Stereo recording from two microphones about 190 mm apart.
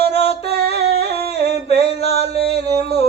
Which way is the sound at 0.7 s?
60° right (ahead or behind).